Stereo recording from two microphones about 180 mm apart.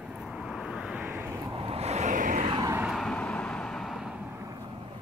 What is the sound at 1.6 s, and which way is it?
Vehicle, 35° right (ahead or behind).